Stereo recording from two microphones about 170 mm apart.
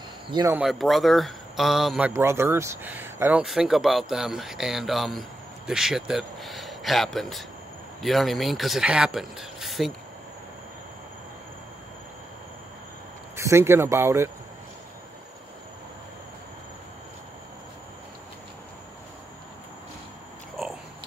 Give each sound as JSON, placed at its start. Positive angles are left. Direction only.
{"t": 0.5, "sound": "speech", "side_deg": -5}
{"t": 13.4, "sound": "speech", "side_deg": -15}